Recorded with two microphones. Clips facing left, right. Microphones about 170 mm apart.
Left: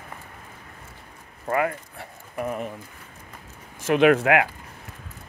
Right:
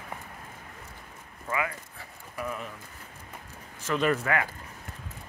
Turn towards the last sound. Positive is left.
turn(degrees=75)  # may be behind; listen again after turning